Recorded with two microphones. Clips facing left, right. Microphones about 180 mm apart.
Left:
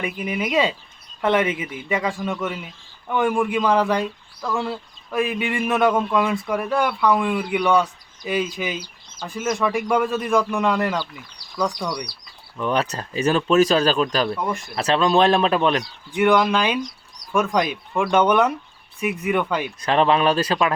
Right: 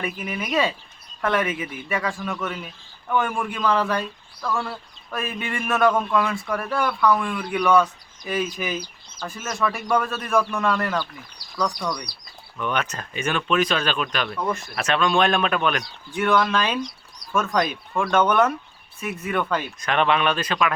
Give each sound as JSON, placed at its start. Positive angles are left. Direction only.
{"t": 0.0, "sound": "a man's voice", "side_deg": 15}
{"t": 12.5, "sound": "speech", "side_deg": 30}
{"t": 16.1, "sound": "speech", "side_deg": 15}
{"t": 19.8, "sound": "speech", "side_deg": 30}